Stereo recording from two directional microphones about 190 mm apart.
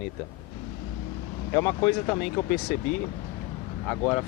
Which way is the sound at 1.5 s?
15° left (ahead or behind).